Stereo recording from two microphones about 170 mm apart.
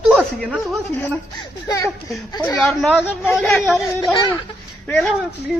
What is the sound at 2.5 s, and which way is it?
Speech, centre (ahead or behind).